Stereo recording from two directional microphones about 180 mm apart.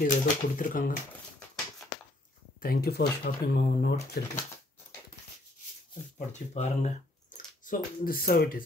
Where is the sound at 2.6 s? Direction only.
60° left (ahead or behind).